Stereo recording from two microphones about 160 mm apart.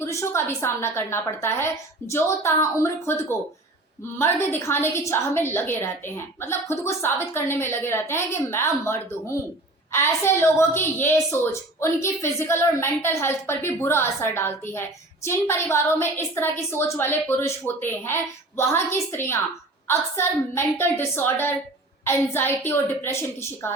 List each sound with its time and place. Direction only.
0.0 s a woman's voice: 15° left (ahead or behind)